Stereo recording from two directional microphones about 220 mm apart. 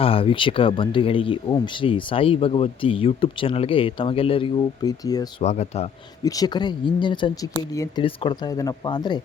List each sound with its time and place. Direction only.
0.0 s speech: 25° left (ahead or behind)
5.4 s speech: 30° left (ahead or behind)
6.2 s speech: 15° left (ahead or behind)